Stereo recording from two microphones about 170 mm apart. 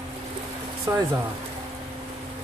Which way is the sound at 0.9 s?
20° right (ahead or behind).